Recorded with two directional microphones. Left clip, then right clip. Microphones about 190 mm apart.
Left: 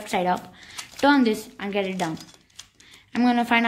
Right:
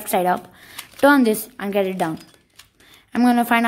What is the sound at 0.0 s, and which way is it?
Speech, 45° right (ahead or behind).